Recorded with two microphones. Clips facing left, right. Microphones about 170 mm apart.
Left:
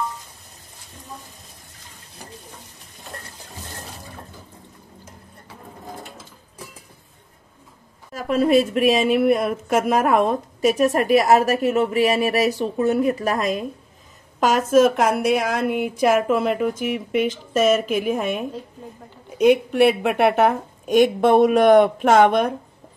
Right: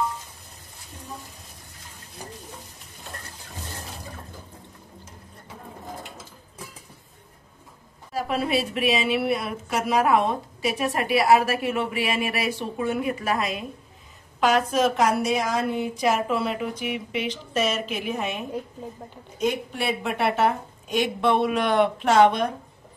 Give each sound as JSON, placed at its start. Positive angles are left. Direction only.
{"t": 8.1, "sound": "a woman's voice", "side_deg": 45}
{"t": 19.3, "sound": "speech", "side_deg": 70}